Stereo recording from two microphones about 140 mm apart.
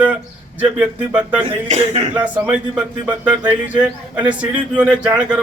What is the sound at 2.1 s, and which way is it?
A man's voice, 10° right (ahead or behind).